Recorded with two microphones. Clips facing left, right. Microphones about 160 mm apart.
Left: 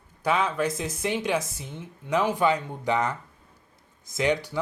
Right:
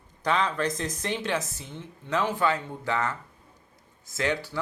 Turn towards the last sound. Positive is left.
turn(degrees=15)  # may be behind; listen again after turning